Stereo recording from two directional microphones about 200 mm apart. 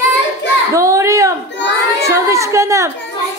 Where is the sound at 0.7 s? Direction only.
15° right (ahead or behind).